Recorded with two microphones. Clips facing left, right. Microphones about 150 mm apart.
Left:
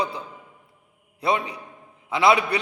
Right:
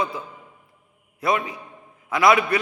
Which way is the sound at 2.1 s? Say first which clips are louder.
Right 1 dB; 25° left (ahead or behind).